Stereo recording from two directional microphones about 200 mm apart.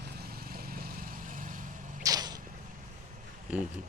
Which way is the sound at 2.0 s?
20° right (ahead or behind).